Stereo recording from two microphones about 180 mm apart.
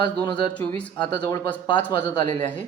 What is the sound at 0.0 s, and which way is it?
Speech, 25° left (ahead or behind).